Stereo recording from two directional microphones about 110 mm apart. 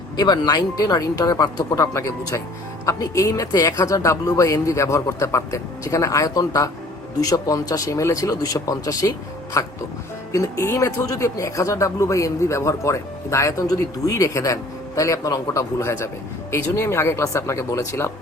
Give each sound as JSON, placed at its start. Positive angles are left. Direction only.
{"t": 0.2, "sound": "speech", "side_deg": 40}